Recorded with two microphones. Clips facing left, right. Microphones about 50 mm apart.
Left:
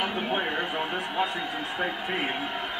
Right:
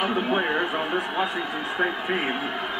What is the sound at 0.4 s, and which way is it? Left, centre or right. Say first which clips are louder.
Speech: right 4 dB; right.